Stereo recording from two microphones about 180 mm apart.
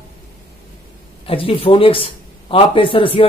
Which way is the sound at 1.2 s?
30° left (ahead or behind).